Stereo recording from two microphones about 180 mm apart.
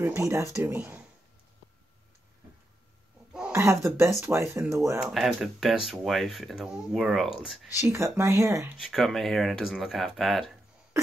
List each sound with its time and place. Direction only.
0.0 s speech: 15° right (ahead or behind)
3.3 s a sound: 5° right (ahead or behind)
3.6 s speech: 15° right (ahead or behind)
4.9 s speech: 5° right (ahead or behind)
7.8 s speech: 15° right (ahead or behind)
8.8 s speech: centre (ahead or behind)